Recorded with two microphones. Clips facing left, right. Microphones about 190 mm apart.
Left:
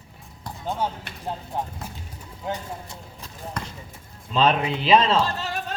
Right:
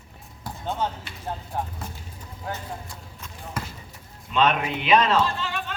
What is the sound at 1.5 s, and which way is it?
Speech, 20° left (ahead or behind).